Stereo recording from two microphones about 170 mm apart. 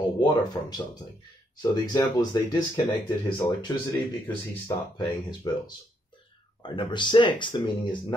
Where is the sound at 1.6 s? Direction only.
25° left (ahead or behind).